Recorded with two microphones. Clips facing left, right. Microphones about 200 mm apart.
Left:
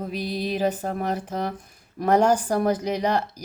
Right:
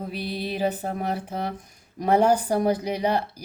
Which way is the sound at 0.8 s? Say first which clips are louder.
Left 1 dB; 5° right (ahead or behind).